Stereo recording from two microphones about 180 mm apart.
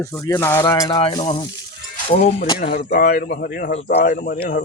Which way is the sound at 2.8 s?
55° left (ahead or behind).